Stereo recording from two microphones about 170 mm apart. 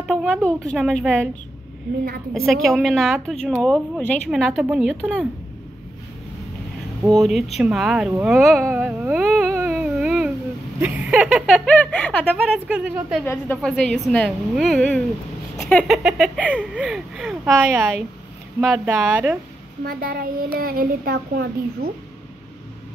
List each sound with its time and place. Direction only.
0.0 s a woman's voice: centre (ahead or behind)
2.4 s a woman's voice: centre (ahead or behind)
7.2 s a woman's voice: centre (ahead or behind)
8.6 s a sound: 10° right (ahead or behind)
9.8 s a sound: 5° right (ahead or behind)
10.8 s a woman's voice: 5° right (ahead or behind)
12.5 s speech: 10° right (ahead or behind)
13.2 s a woman's voice: 10° left (ahead or behind); by 19.3 s 10° right (ahead or behind)
19.8 s speech: 60° right (ahead or behind)